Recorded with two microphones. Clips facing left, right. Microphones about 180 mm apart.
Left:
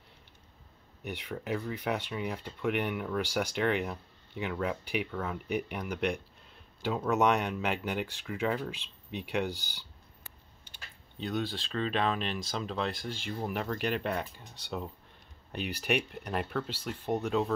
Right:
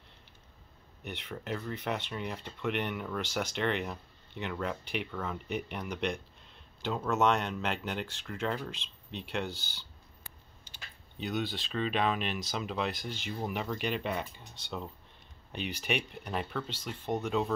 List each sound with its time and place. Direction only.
1.0 s speech: 5° left (ahead or behind)
10.7 s a sound: 60° left (ahead or behind)
11.2 s speech: centre (ahead or behind)